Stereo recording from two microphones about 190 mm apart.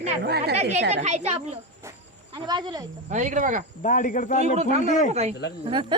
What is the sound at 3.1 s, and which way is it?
Speech, 40° right (ahead or behind).